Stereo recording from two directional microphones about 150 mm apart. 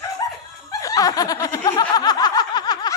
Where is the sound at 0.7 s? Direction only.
25° left (ahead or behind).